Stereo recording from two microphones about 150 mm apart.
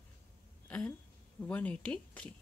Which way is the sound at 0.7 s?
10° left (ahead or behind).